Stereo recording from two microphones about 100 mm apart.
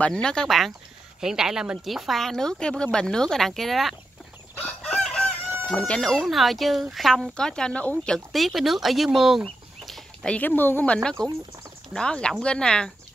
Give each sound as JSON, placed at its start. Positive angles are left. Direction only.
{"t": 0.0, "sound": "speech", "side_deg": 10}
{"t": 4.6, "sound": "chicken", "side_deg": 10}
{"t": 5.8, "sound": "speech", "side_deg": 10}
{"t": 10.3, "sound": "speech", "side_deg": 20}
{"t": 11.0, "sound": "speech", "side_deg": 5}